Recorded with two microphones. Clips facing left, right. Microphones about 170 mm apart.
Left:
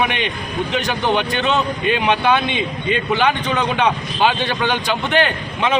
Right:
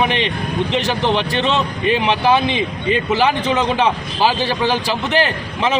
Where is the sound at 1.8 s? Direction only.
30° right (ahead or behind).